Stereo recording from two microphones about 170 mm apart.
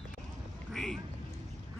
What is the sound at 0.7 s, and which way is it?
Quack, centre (ahead or behind).